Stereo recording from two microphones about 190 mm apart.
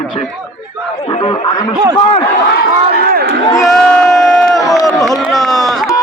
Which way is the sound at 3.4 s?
15° left (ahead or behind).